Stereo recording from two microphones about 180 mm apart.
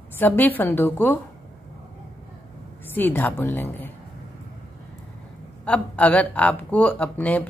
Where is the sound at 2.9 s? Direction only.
10° left (ahead or behind).